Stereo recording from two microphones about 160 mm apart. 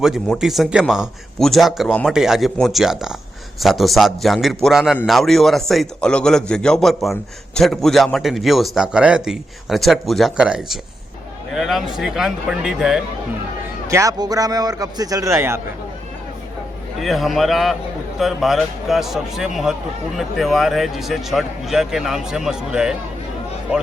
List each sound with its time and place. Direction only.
0.0 s a man's voice: centre (ahead or behind)
13.8 s a man's voice: 20° right (ahead or behind)
17.0 s a man's voice: centre (ahead or behind)